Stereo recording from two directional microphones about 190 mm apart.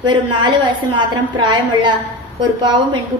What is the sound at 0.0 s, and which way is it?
A woman's voice, 25° right (ahead or behind).